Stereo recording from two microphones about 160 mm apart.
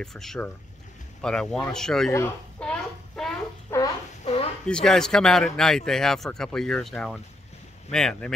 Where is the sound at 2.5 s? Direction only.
5° left (ahead or behind).